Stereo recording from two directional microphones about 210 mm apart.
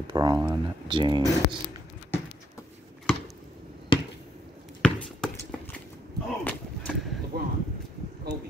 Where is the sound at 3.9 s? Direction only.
25° left (ahead or behind).